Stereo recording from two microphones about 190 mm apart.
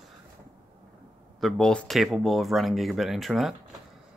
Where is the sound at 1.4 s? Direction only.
Centre (ahead or behind).